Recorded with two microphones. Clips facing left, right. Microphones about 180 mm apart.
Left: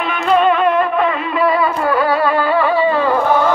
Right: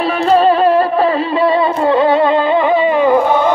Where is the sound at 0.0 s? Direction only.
35° right (ahead or behind).